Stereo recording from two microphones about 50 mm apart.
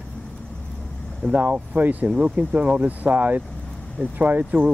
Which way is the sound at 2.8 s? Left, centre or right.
Right.